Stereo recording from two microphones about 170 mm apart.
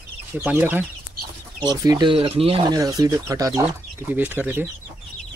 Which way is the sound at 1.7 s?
25° right (ahead or behind).